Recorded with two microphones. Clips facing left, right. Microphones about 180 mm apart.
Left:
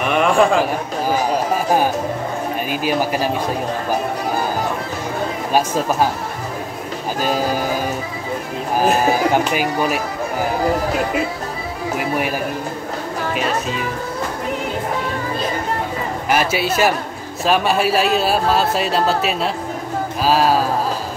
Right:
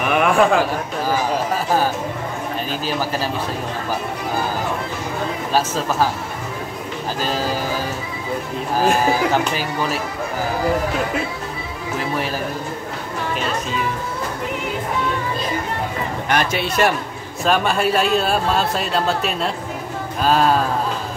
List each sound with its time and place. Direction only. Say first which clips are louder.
0.1 s a man's voice: left 1 dB; 5° right (ahead or behind)
2.7 s a man's voice: left 5 dB; 15° left (ahead or behind)
5.5 s a man's voice: left 3 dB; 15° left (ahead or behind)
7.2 s a man's voice: left 4 dB; 15° left (ahead or behind)
8.7 s a man's voice: left 1 dB; 15° left (ahead or behind)
12.0 s a man's voice: left 2 dB; 15° left (ahead or behind)
16.3 s a man's voice: left 3 dB; 5° left (ahead or behind)